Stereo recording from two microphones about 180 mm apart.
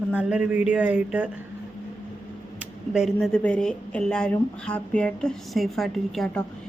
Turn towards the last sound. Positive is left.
turn(degrees=0)  # may be behind; listen again after turning